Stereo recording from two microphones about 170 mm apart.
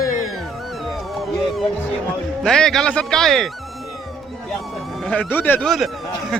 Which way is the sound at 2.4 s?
5° left (ahead or behind).